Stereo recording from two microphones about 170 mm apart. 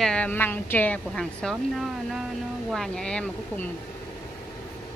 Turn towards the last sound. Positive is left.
turn(degrees=10)  # may be behind; listen again after turning